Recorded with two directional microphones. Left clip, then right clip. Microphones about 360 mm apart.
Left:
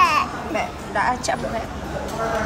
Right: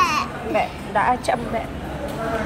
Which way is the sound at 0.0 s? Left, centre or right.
Centre.